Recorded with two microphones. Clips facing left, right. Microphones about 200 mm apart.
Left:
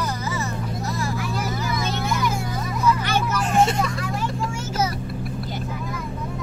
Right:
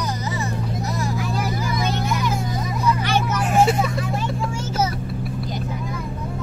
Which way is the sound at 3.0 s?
10° right (ahead or behind).